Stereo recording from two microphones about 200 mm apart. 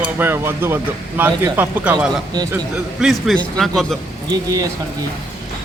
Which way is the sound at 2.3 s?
20° right (ahead or behind).